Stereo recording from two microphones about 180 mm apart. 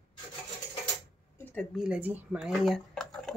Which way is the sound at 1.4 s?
10° left (ahead or behind).